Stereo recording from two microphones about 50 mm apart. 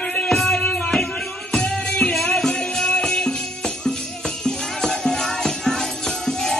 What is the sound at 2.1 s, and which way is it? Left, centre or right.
Music, centre.